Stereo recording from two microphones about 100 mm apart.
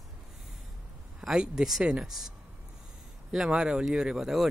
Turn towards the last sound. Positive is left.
turn(degrees=-5)  # may be behind; listen again after turning